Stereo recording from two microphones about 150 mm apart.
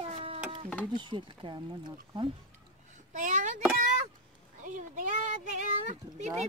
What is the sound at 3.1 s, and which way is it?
Speech, 55° right (ahead or behind).